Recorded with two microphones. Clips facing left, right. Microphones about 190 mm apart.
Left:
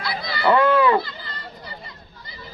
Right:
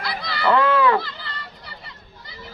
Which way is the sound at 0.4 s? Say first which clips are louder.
Left 1 dB; 15° left (ahead or behind).